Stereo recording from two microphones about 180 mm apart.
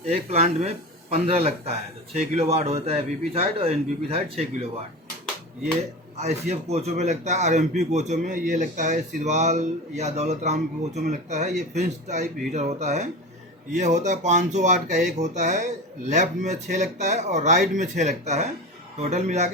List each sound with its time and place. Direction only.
0.0 s a man's voice: 35° right (ahead or behind)
6.1 s a man's voice: 35° right (ahead or behind)